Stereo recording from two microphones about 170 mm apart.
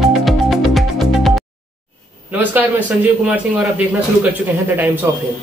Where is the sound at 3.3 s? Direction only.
10° right (ahead or behind).